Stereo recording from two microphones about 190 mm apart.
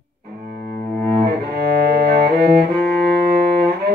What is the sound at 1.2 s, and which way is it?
Cello, 55° right (ahead or behind).